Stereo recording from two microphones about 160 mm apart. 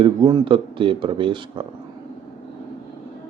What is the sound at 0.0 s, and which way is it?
Speech, 25° right (ahead or behind).